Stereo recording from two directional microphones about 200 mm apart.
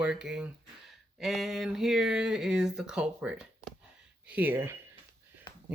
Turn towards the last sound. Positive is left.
turn(degrees=20)  # may be behind; listen again after turning